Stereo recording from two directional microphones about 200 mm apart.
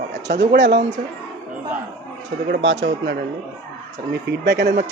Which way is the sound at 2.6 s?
65° right (ahead or behind).